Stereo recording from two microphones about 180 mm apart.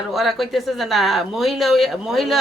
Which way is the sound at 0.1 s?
Centre (ahead or behind).